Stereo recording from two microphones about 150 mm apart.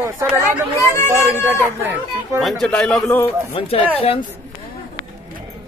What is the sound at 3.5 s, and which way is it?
Speech, 35° left (ahead or behind).